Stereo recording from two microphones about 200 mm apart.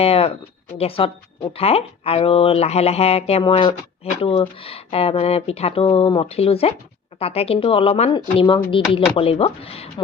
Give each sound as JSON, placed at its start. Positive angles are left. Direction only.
{"t": 0.0, "sound": "speech", "side_deg": 30}